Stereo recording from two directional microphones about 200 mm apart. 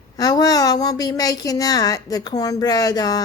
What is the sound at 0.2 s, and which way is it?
Speech, 20° left (ahead or behind).